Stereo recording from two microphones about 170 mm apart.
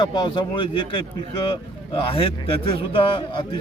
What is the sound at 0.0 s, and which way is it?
A man's voice, 25° left (ahead or behind).